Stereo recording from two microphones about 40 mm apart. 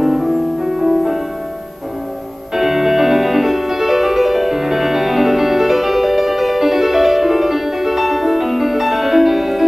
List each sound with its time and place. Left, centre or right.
0.0 s music: centre
2.5 s music: centre